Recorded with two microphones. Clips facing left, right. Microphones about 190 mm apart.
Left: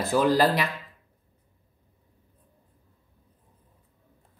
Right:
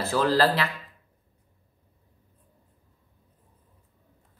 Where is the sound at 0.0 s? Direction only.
15° left (ahead or behind).